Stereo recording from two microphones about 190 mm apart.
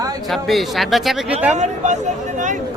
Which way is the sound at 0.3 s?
Centre (ahead or behind).